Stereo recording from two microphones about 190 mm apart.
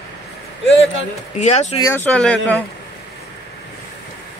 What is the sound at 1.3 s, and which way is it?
Speech, 35° left (ahead or behind).